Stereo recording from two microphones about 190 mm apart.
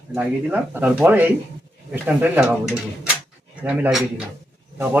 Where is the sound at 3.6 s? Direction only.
10° right (ahead or behind).